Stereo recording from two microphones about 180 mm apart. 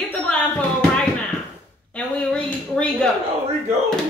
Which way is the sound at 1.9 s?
5° left (ahead or behind).